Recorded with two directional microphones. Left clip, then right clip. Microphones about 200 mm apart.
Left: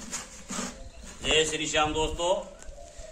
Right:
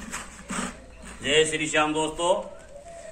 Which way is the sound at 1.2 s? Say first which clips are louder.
Right 3 dB; 10° left (ahead or behind).